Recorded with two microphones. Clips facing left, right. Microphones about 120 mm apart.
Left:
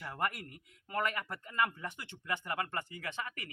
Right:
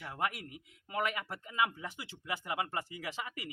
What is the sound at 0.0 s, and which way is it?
Speech, 5° right (ahead or behind).